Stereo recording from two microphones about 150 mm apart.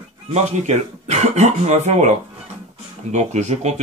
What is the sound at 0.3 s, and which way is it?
Speech, 50° right (ahead or behind).